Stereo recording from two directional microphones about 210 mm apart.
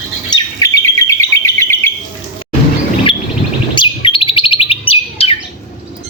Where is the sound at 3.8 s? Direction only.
25° left (ahead or behind).